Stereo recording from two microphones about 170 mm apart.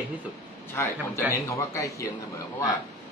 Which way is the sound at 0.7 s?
15° left (ahead or behind).